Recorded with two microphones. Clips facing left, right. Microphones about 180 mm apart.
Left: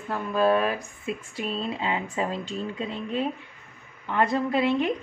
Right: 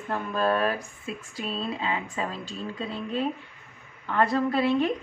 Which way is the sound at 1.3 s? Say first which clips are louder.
Even; 25° left (ahead or behind).